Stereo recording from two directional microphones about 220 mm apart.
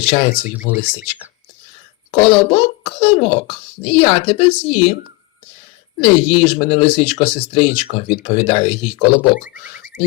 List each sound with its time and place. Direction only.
0.0 s speech: 25° left (ahead or behind)
2.1 s speech: 20° left (ahead or behind)
6.0 s speech: 25° left (ahead or behind)
9.3 s speech: 35° left (ahead or behind)